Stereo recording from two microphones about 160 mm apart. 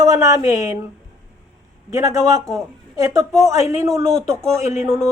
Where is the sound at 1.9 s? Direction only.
20° right (ahead or behind).